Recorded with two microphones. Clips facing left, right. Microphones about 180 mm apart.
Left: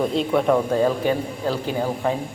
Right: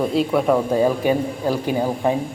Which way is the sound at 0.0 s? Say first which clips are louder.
Right 1 dB; 5° right (ahead or behind).